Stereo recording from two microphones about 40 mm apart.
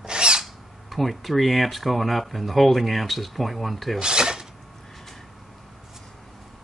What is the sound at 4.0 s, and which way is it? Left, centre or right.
Zipper, centre.